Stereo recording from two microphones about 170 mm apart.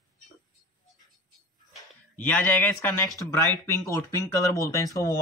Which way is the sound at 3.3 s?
15° left (ahead or behind).